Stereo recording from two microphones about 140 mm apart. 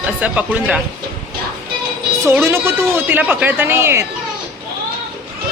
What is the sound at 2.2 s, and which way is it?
Speech, 15° right (ahead or behind).